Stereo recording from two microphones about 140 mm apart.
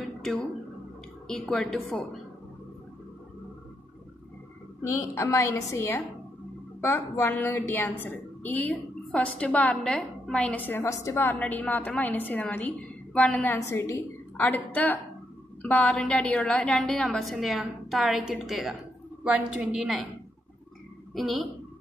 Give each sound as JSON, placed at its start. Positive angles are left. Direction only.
{"t": 0.0, "sound": "guitar", "side_deg": 0}
{"t": 1.2, "sound": "a woman's voice", "side_deg": 0}
{"t": 4.8, "sound": "a woman's voice", "side_deg": 20}
{"t": 21.1, "sound": "a woman's voice", "side_deg": 0}